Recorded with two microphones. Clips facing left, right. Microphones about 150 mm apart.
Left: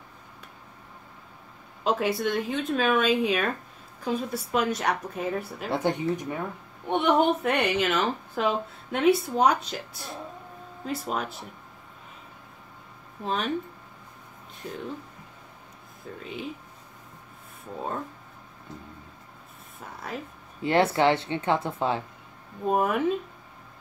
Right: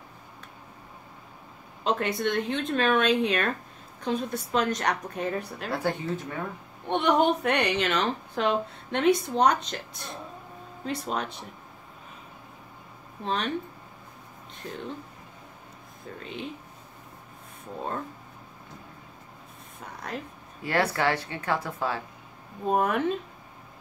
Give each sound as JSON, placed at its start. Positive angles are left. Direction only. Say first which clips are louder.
{"t": 1.9, "sound": "speech", "louder": "left 1 dB", "side_deg": 5}
{"t": 5.7, "sound": "speech", "louder": "left 3 dB", "side_deg": 20}
{"t": 6.9, "sound": "speech", "louder": "left 1 dB", "side_deg": 5}
{"t": 13.2, "sound": "speech", "louder": "even", "side_deg": 5}
{"t": 14.6, "sound": "speech", "louder": "left 1 dB", "side_deg": 5}
{"t": 16.1, "sound": "speech", "louder": "left 1 dB", "side_deg": 5}
{"t": 19.8, "sound": "speech", "louder": "even", "side_deg": 5}
{"t": 20.6, "sound": "speech", "louder": "left 4 dB", "side_deg": 25}
{"t": 22.7, "sound": "speech", "louder": "left 1 dB", "side_deg": 5}